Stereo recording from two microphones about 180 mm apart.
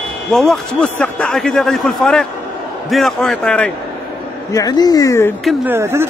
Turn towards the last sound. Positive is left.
turn(degrees=-15)  # may be behind; listen again after turning